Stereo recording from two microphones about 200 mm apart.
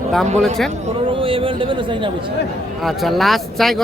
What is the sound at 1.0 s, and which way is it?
A man's voice, 25° right (ahead or behind).